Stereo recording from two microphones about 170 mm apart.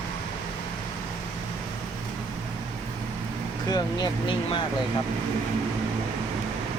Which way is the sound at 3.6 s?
25° left (ahead or behind).